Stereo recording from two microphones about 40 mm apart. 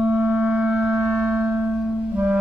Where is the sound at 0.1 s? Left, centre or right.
Right.